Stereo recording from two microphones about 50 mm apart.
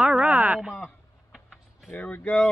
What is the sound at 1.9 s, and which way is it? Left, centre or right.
Speech, left.